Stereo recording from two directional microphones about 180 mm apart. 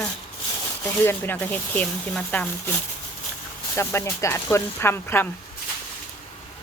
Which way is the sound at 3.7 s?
15° left (ahead or behind).